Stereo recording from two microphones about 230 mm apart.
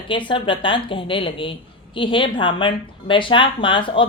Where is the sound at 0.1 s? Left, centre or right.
Left.